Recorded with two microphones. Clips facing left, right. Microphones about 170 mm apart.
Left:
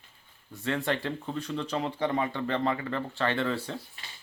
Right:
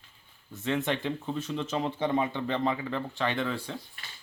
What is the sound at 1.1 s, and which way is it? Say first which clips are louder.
Speech: right 1 dB; 5° right (ahead or behind).